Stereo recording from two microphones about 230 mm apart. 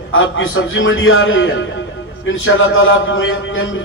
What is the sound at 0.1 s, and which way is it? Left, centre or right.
A man's voice, left.